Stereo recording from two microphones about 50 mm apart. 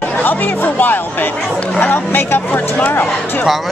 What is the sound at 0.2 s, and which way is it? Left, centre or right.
Speech, left.